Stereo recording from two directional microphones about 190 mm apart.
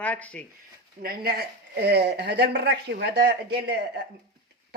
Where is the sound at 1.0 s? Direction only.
50° right (ahead or behind).